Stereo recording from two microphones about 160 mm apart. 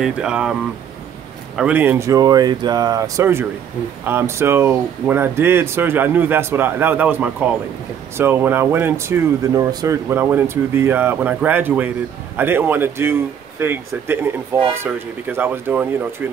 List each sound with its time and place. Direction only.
0.0 s speech: 5° right (ahead or behind)
1.6 s speech: 10° right (ahead or behind)